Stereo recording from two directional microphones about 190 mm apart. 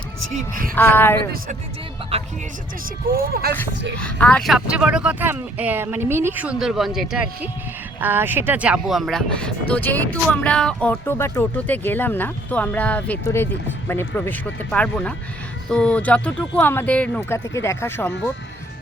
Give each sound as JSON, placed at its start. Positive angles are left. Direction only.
{"t": 0.8, "sound": "speech", "side_deg": 10}
{"t": 3.1, "sound": "speech", "side_deg": -50}
{"t": 4.0, "sound": "speech", "side_deg": 5}